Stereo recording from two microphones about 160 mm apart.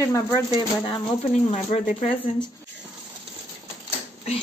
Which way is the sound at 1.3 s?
45° left (ahead or behind).